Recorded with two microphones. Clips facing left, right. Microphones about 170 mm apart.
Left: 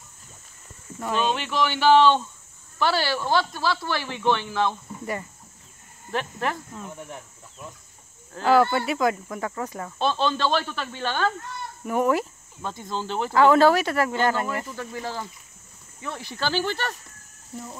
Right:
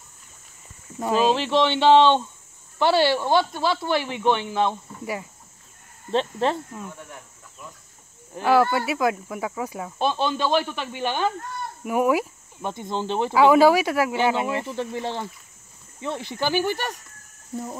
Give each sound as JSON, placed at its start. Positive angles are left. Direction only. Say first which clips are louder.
{"t": 1.1, "sound": "speech", "louder": "right 5 dB", "side_deg": -30}
{"t": 6.1, "sound": "speech", "louder": "right 5 dB", "side_deg": -25}
{"t": 8.5, "sound": "speech", "louder": "even", "side_deg": -5}
{"t": 12.7, "sound": "speech", "louder": "right 3 dB", "side_deg": -20}
{"t": 13.3, "sound": "speech", "louder": "right 1 dB", "side_deg": -10}
{"t": 14.5, "sound": "speech", "louder": "right 4 dB", "side_deg": -25}